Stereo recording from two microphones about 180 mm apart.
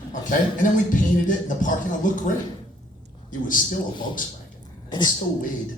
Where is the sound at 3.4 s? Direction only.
50° left (ahead or behind).